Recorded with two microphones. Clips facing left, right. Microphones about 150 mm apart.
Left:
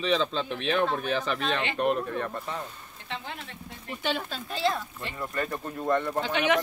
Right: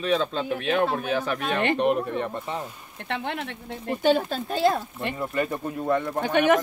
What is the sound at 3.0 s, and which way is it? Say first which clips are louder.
Speech: right 8 dB; 65° right (ahead or behind).